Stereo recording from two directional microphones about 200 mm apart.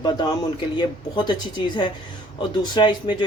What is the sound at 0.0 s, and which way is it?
Speech, 20° left (ahead or behind).